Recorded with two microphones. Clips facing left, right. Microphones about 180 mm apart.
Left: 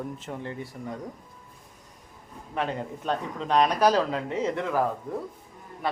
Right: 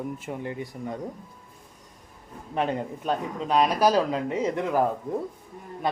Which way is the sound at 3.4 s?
5° right (ahead or behind).